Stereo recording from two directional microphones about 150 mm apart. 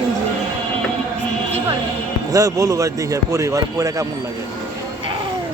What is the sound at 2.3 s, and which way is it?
Speech, 25° right (ahead or behind).